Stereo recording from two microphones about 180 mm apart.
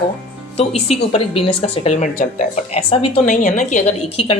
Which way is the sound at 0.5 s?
35° left (ahead or behind).